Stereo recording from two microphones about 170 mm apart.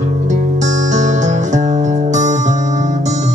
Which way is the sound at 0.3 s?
45° right (ahead or behind).